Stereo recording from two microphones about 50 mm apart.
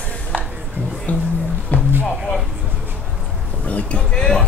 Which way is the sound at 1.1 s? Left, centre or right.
Left.